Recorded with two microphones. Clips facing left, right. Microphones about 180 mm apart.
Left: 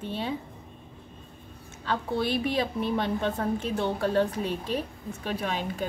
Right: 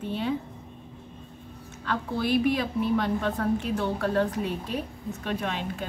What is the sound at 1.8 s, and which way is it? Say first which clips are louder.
A woman's voice: left 1 dB; 30° left (ahead or behind).